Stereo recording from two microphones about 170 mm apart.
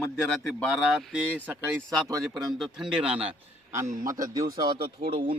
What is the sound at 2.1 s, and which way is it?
Speech, 20° right (ahead or behind).